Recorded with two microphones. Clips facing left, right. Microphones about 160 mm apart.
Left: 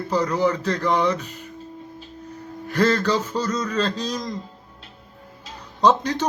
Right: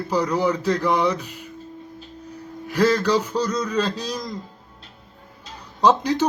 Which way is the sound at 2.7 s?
10° right (ahead or behind).